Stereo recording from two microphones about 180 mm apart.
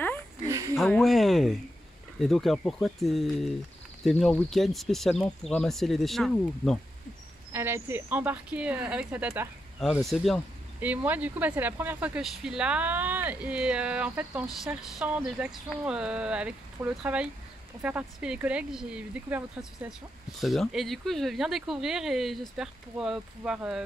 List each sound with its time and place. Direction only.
0.5 s a sound: 15° right (ahead or behind)
0.7 s speech: centre (ahead or behind)
7.5 s speech: 10° right (ahead or behind)
10.8 s speech: 10° right (ahead or behind)